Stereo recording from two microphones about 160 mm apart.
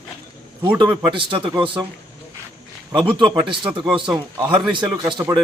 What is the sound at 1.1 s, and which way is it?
Speech, 30° right (ahead or behind).